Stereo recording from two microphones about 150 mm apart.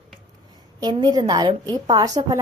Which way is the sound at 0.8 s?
25° right (ahead or behind).